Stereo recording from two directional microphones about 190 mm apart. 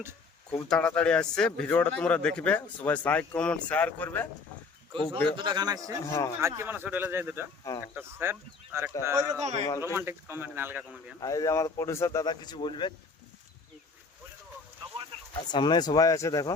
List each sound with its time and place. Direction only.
0.5 s a man's voice: 5° left (ahead or behind)
5.1 s a man's voice: 25° right (ahead or behind)
6.0 s a man's voice: 15° left (ahead or behind)
6.4 s speech: 10° right (ahead or behind)
11.2 s speech: 20° left (ahead or behind)
15.4 s speech: 25° left (ahead or behind)